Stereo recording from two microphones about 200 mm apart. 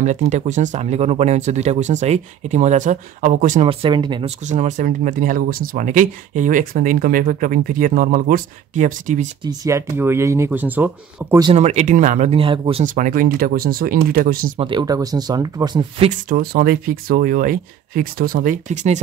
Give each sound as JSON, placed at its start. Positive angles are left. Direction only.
{"t": 0.0, "sound": "speech", "side_deg": -35}
{"t": 3.6, "sound": "speech", "side_deg": -25}
{"t": 4.5, "sound": "speech", "side_deg": -35}
{"t": 9.4, "sound": "speech", "side_deg": -15}
{"t": 11.4, "sound": "speech", "side_deg": -35}
{"t": 12.8, "sound": "speech", "side_deg": -40}
{"t": 14.6, "sound": "speech", "side_deg": -25}
{"t": 16.3, "sound": "speech", "side_deg": -45}